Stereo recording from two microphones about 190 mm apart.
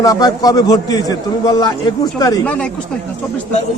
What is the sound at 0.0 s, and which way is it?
A man's voice, 20° left (ahead or behind).